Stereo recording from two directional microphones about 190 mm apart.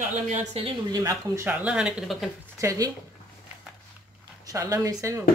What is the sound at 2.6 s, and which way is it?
Speech, 15° right (ahead or behind).